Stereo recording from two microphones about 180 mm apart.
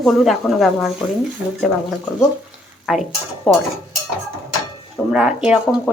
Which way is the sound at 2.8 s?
Centre (ahead or behind).